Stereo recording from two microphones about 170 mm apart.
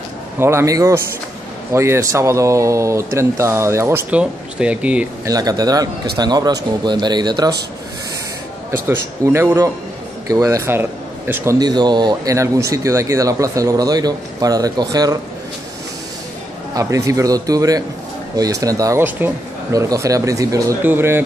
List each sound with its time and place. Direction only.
0.4 s speech: 15° right (ahead or behind)
5.2 s speech: 20° right (ahead or behind)
8.8 s speech: 15° right (ahead or behind)
11.6 s speech: 25° right (ahead or behind)
16.7 s speech: 20° right (ahead or behind)